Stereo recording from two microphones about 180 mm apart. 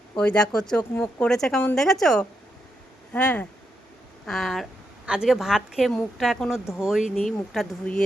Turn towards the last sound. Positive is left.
turn(degrees=5)  # may be behind; listen again after turning